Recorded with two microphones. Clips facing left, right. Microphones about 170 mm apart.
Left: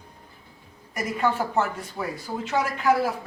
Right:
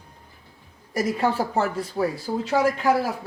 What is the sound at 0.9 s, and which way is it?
Speech, 35° right (ahead or behind).